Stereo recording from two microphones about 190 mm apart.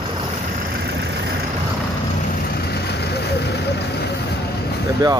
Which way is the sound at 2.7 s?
60° left (ahead or behind).